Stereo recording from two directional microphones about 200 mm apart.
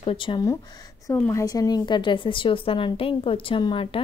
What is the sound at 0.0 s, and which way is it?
A woman's voice, 25° left (ahead or behind).